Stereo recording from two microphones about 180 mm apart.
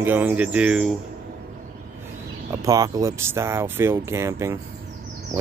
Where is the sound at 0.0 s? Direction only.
10° right (ahead or behind).